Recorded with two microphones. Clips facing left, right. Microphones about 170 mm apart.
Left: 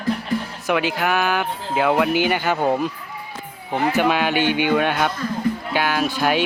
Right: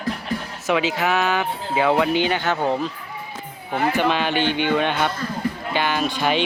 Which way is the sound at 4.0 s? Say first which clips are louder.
Left 3 dB; 10° left (ahead or behind).